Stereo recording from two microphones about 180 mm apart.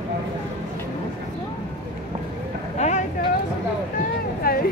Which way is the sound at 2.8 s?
40° left (ahead or behind).